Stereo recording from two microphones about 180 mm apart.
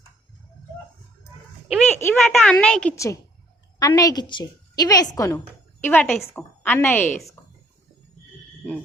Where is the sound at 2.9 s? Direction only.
15° left (ahead or behind).